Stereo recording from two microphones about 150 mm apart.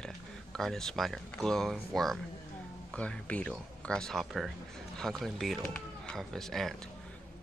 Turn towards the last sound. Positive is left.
turn(degrees=5)  # may be behind; listen again after turning